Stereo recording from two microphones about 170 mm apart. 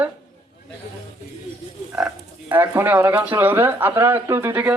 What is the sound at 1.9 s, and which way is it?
Speech, 10° right (ahead or behind).